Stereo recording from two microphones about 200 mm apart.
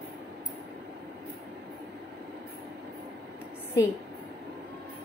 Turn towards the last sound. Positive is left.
turn(degrees=15)  # may be behind; listen again after turning